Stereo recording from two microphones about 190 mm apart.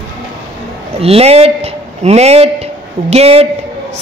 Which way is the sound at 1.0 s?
30° right (ahead or behind).